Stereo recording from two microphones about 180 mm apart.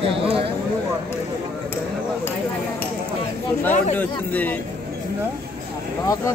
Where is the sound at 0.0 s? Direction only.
30° right (ahead or behind).